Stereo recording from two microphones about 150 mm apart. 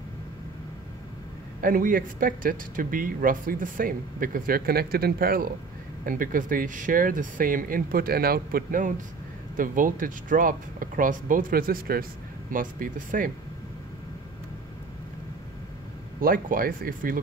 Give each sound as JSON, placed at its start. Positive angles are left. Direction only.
{"t": 1.6, "sound": "speech", "side_deg": -70}
{"t": 6.0, "sound": "speech", "side_deg": -65}
{"t": 16.2, "sound": "speech", "side_deg": -70}